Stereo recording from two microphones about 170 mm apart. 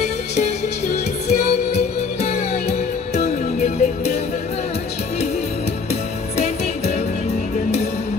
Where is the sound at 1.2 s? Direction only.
40° left (ahead or behind).